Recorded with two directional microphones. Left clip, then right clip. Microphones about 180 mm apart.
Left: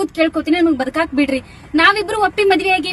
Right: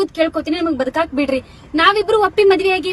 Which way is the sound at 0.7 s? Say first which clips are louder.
Left 1 dB; 15° right (ahead or behind).